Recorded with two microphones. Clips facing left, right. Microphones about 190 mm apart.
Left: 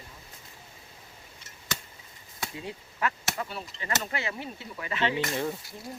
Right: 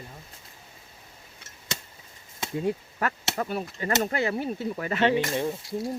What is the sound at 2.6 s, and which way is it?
Speech, 45° right (ahead or behind).